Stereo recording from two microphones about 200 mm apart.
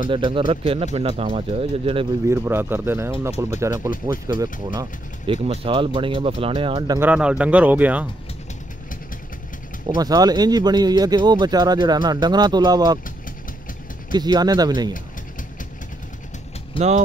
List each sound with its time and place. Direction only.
0.1 s speech: 25° right (ahead or behind)
2.2 s speech: 10° right (ahead or behind)
7.0 s speech: 5° right (ahead or behind)
9.8 s speech: 20° right (ahead or behind)
14.1 s speech: 20° right (ahead or behind)
16.7 s speech: 35° right (ahead or behind)